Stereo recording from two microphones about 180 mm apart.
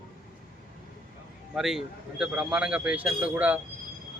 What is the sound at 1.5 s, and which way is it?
A man's voice, centre (ahead or behind).